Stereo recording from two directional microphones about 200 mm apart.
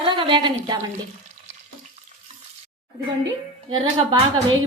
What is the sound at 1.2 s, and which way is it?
Water, 35° right (ahead or behind).